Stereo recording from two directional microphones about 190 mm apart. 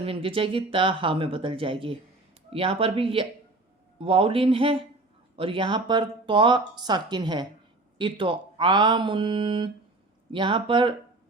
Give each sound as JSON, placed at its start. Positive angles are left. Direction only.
{"t": 0.0, "sound": "speech", "side_deg": -30}